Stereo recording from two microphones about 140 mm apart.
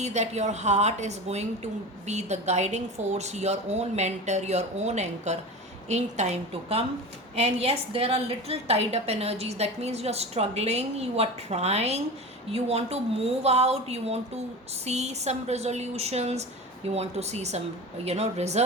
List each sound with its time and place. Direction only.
0.0 s a woman's voice: 55° right (ahead or behind)